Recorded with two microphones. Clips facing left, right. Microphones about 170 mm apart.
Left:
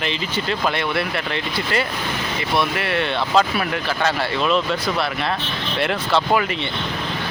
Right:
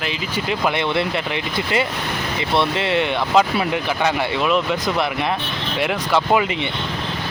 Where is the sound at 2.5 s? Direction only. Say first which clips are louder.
Right 2 dB; 25° right (ahead or behind).